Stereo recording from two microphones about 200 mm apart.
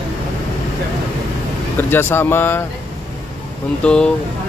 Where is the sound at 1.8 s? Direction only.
10° left (ahead or behind).